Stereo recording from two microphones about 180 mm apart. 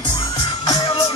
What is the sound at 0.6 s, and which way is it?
Music, 20° left (ahead or behind).